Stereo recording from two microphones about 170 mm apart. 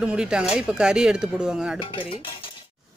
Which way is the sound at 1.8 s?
30° left (ahead or behind).